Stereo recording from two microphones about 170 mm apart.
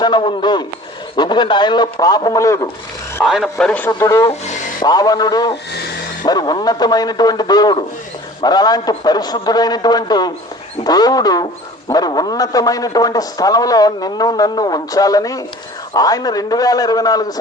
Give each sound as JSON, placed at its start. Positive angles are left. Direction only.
{"t": 0.0, "sound": "a man's voice", "side_deg": 30}
{"t": 3.2, "sound": "a man's voice", "side_deg": 0}
{"t": 3.9, "sound": "a man's voice", "side_deg": 20}